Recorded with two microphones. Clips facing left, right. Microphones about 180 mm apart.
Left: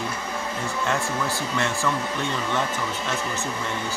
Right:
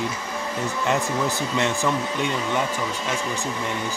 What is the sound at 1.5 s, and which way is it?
Speech, 15° right (ahead or behind).